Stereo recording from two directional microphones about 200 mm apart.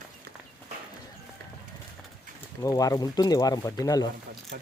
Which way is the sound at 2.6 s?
15° left (ahead or behind).